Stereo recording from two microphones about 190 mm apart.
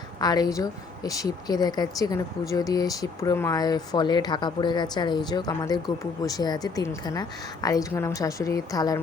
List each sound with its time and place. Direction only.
0.2 s a woman's voice: 20° left (ahead or behind)